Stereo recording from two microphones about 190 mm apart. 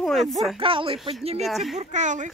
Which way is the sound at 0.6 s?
30° right (ahead or behind).